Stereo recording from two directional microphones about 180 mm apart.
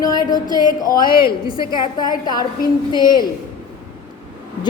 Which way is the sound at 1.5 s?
25° left (ahead or behind).